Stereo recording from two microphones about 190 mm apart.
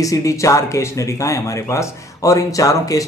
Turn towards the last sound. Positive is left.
turn(degrees=20)  # may be behind; listen again after turning